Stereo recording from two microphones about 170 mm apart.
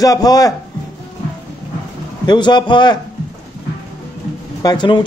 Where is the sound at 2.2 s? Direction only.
25° left (ahead or behind).